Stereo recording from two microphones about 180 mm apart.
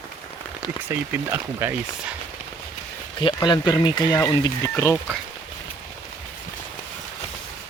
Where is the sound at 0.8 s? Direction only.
15° right (ahead or behind).